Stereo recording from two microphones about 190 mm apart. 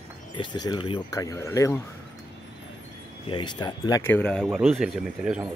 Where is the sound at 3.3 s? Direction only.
25° left (ahead or behind).